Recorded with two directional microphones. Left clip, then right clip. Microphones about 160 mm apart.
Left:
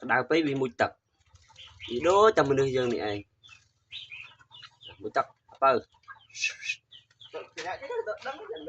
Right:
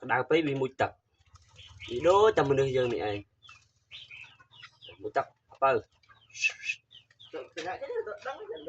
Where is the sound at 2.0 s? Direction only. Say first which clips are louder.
Left 1 dB; 35° left (ahead or behind).